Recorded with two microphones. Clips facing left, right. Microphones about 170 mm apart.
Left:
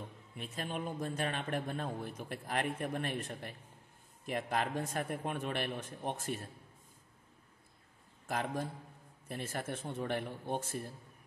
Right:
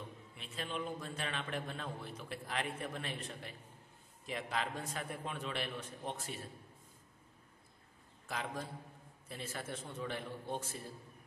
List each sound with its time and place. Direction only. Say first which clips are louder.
0.4 s a man's voice: left 2 dB; 50° left (ahead or behind)
8.3 s a man's voice: left 5 dB; 50° left (ahead or behind)